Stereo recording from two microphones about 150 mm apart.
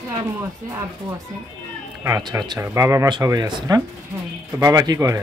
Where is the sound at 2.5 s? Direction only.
20° right (ahead or behind).